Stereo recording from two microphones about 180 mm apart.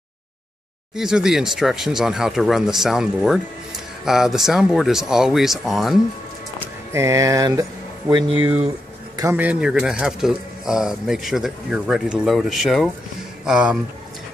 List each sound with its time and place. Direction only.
0.9 s speech: 5° right (ahead or behind)
6.6 s speech: 15° right (ahead or behind)
8.4 s speech: 10° right (ahead or behind)